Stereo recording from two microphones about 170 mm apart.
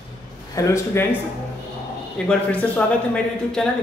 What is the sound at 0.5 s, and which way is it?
Speech, 15° left (ahead or behind).